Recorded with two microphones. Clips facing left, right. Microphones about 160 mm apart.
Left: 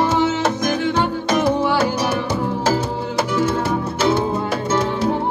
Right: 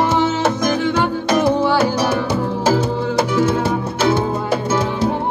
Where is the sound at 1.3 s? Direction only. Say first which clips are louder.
Right 3 dB; 10° right (ahead or behind).